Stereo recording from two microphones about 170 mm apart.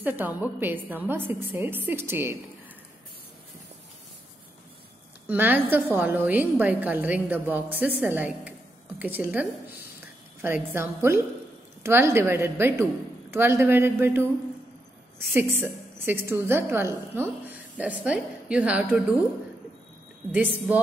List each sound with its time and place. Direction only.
0.0 s a woman's voice: 10° right (ahead or behind)
5.3 s a woman's voice: 10° right (ahead or behind)
15.3 s a woman's voice: 10° right (ahead or behind)
20.2 s a woman's voice: 10° right (ahead or behind)